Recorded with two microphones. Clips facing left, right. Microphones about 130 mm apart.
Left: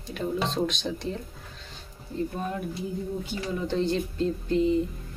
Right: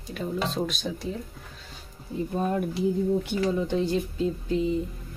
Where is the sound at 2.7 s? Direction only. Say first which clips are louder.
Right 8 dB; 70° right (ahead or behind).